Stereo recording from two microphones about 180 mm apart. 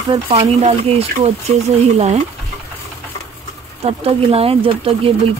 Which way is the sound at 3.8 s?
35° right (ahead or behind).